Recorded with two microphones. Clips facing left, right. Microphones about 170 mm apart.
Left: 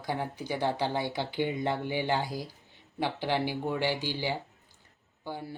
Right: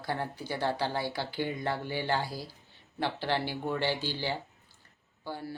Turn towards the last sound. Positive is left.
turn(degrees=15)  # may be behind; listen again after turning